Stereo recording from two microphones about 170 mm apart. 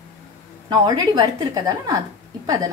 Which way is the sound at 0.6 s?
25° right (ahead or behind).